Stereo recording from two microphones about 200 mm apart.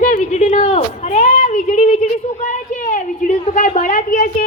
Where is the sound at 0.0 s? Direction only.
40° left (ahead or behind).